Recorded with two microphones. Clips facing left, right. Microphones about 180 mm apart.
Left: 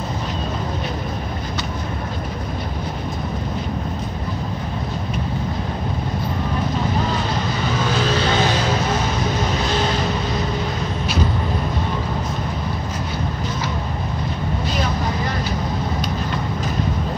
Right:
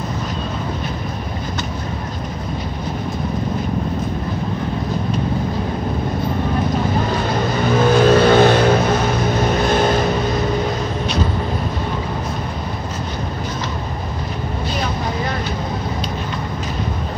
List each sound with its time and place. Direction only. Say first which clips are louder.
7.8 s vehicle: right 10 dB; 55° right (ahead or behind)